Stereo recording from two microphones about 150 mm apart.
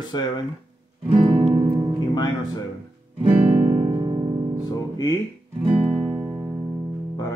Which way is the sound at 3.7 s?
35° right (ahead or behind).